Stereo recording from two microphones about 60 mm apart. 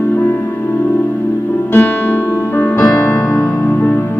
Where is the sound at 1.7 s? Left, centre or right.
Left.